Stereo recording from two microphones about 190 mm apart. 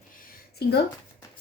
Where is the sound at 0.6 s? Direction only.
55° left (ahead or behind).